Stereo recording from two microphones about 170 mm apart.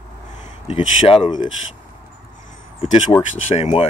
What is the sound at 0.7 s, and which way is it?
Speech, 35° left (ahead or behind).